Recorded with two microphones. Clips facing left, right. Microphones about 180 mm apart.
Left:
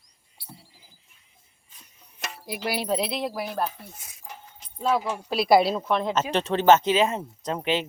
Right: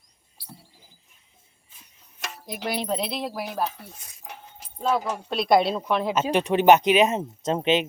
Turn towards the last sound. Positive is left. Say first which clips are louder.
# right 4 dB
turn(degrees=-20)  # may be behind; listen again after turning